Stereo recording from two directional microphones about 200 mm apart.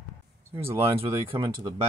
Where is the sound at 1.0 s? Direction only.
25° right (ahead or behind).